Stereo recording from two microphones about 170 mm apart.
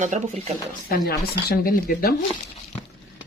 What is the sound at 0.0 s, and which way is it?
Speech, 45° right (ahead or behind).